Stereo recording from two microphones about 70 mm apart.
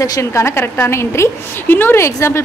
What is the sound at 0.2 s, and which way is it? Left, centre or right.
A woman's voice, left.